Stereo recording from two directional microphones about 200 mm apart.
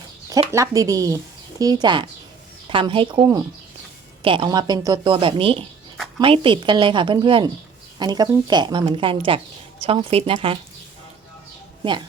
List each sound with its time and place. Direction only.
0.3 s speech: 15° right (ahead or behind)
11.8 s speech: 25° right (ahead or behind)